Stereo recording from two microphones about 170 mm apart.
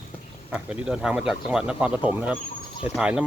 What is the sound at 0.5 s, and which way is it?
Speech, 10° right (ahead or behind).